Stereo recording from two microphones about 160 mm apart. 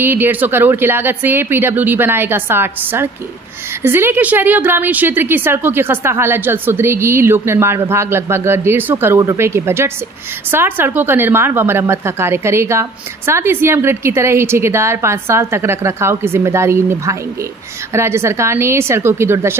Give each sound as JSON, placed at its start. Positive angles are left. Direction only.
{"t": 0.0, "sound": "a woman's voice", "side_deg": -15}